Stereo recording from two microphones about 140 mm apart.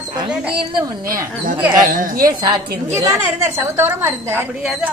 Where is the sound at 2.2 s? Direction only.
35° right (ahead or behind).